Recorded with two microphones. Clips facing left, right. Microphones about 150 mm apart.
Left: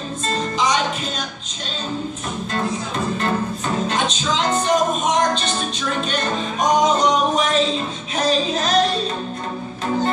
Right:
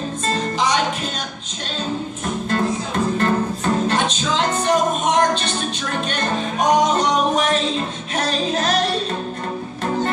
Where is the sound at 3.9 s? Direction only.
55° right (ahead or behind).